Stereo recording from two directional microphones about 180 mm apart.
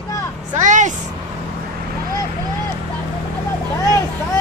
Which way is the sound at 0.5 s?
45° right (ahead or behind).